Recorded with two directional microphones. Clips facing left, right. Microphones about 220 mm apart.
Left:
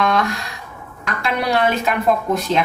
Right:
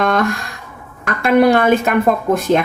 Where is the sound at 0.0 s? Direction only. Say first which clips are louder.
Right 3 dB; 50° right (ahead or behind).